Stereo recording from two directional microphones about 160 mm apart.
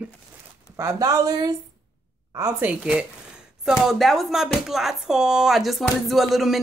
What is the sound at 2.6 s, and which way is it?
Speech, 5° right (ahead or behind).